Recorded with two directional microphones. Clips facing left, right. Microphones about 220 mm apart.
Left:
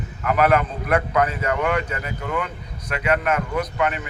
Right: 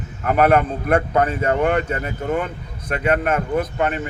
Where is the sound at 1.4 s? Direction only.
30° right (ahead or behind).